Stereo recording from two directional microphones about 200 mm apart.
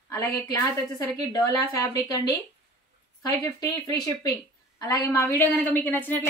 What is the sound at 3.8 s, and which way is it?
Speech, 20° left (ahead or behind).